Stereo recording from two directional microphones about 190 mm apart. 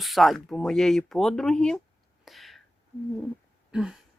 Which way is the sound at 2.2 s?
Centre (ahead or behind).